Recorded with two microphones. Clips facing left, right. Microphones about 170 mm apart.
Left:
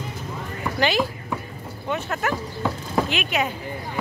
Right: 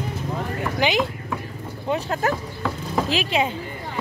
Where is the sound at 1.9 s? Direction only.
35° right (ahead or behind).